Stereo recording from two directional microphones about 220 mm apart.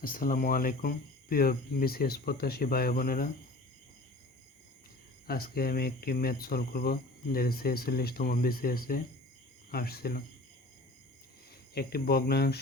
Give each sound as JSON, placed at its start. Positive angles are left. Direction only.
{"t": 0.0, "sound": "speech", "side_deg": 40}
{"t": 5.2, "sound": "speech", "side_deg": 45}
{"t": 11.7, "sound": "speech", "side_deg": 45}